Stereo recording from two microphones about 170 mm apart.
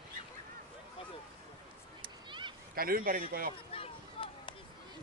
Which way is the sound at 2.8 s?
60° right (ahead or behind).